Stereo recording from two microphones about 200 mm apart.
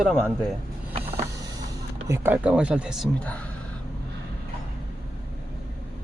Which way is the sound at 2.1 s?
10° right (ahead or behind).